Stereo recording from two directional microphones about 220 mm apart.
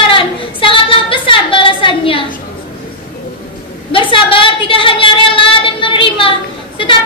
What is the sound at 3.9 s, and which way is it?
A woman's voice, 25° left (ahead or behind).